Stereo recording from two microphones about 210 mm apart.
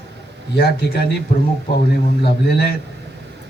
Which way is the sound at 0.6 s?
50° left (ahead or behind).